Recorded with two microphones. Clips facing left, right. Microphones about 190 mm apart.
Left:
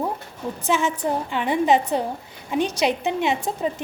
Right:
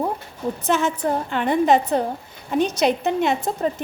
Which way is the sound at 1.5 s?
10° left (ahead or behind).